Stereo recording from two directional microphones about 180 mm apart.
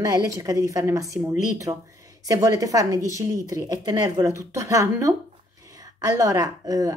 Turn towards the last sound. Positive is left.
turn(degrees=-20)  # may be behind; listen again after turning